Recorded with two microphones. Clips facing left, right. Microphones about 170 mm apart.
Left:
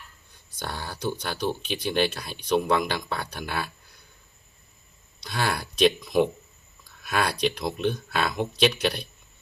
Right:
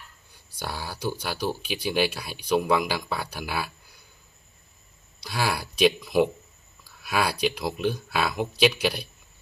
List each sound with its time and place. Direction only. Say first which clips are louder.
0.6 s speech: even; 5° right (ahead or behind)
5.2 s speech: even; 5° right (ahead or behind)